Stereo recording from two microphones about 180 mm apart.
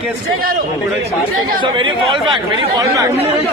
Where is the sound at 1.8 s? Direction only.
30° right (ahead or behind).